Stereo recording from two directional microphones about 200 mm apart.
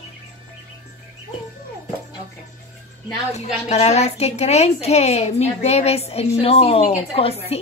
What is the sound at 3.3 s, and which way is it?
A woman's voice, 35° left (ahead or behind).